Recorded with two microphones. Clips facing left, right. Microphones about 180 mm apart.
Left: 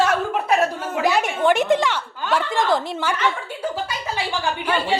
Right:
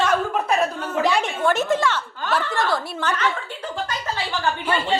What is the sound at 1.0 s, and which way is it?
A woman's voice, 10° left (ahead or behind).